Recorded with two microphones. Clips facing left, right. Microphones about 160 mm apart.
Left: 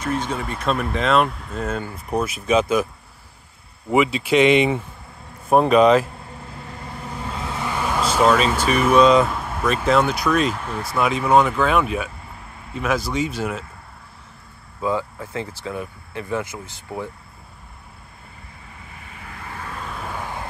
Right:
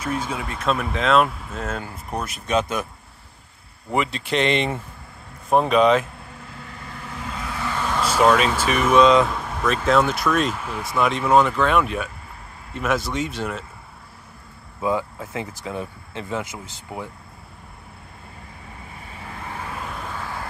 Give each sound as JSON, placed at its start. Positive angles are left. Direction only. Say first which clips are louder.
{"t": 0.0, "sound": "speech", "louder": "left 2 dB", "side_deg": -5}
{"t": 3.9, "sound": "speech", "louder": "left 6 dB", "side_deg": 5}
{"t": 7.3, "sound": "vehicle", "louder": "left 1 dB", "side_deg": 25}
{"t": 8.0, "sound": "speech", "louder": "even", "side_deg": -5}
{"t": 14.8, "sound": "speech", "louder": "even", "side_deg": -20}
{"t": 19.6, "sound": "vehicle", "louder": "left 1 dB", "side_deg": -5}